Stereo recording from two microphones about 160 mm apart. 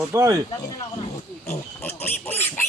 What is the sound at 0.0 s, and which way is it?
Speech, 20° right (ahead or behind).